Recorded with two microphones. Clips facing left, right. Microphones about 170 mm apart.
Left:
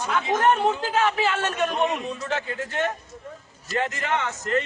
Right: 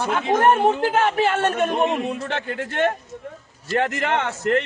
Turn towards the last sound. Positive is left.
turn(degrees=-70)  # may be behind; listen again after turning